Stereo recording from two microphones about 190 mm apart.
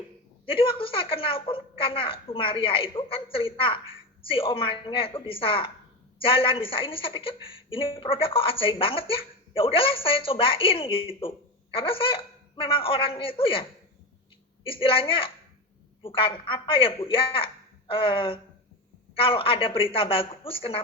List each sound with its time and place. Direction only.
0.4 s a woman's voice: 30° left (ahead or behind)